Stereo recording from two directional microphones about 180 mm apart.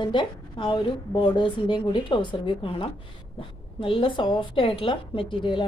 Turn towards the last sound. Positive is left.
turn(degrees=25)  # may be behind; listen again after turning